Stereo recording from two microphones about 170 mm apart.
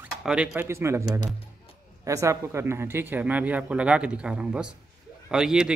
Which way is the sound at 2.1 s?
15° right (ahead or behind).